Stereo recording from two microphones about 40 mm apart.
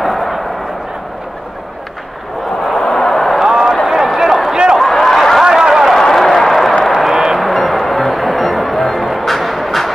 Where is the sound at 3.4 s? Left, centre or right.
Centre.